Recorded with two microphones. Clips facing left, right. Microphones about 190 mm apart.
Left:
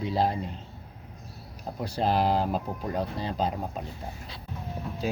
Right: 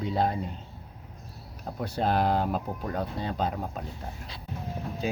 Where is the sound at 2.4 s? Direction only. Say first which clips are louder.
Left 1 dB; 30° left (ahead or behind).